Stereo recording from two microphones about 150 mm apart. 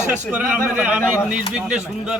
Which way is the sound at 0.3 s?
5° right (ahead or behind).